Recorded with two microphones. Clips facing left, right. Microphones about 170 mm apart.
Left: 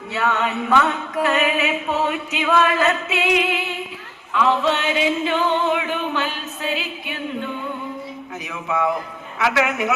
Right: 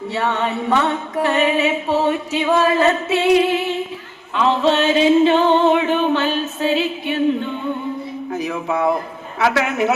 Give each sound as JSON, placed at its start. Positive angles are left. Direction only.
{"t": 0.1, "sound": "mantra", "side_deg": -30}
{"t": 4.4, "sound": "music", "side_deg": -30}
{"t": 8.3, "sound": "mantra", "side_deg": -35}